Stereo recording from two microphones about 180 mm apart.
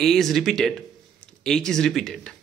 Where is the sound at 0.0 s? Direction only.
Centre (ahead or behind).